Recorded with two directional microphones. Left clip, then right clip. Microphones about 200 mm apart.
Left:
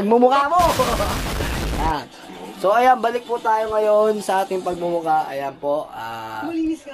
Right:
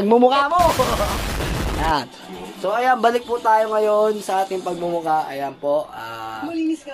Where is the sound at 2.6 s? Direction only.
50° left (ahead or behind).